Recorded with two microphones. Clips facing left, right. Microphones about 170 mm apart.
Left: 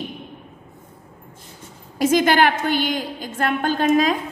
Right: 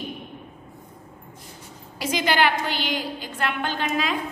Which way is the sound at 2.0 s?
50° left (ahead or behind).